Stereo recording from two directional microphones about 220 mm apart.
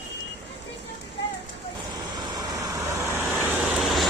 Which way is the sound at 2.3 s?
15° right (ahead or behind).